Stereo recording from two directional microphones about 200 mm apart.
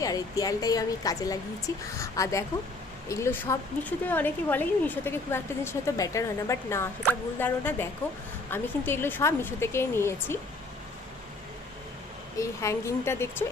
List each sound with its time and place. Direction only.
0.0 s speech: 15° left (ahead or behind)
12.4 s speech: 15° left (ahead or behind)